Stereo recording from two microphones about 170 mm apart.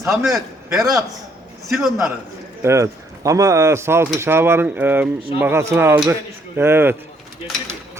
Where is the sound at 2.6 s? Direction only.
15° right (ahead or behind).